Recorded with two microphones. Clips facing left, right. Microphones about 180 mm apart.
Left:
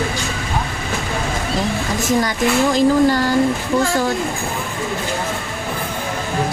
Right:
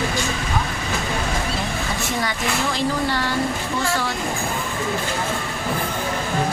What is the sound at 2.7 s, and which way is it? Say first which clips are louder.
Speech: left 9 dB; 45° left (ahead or behind).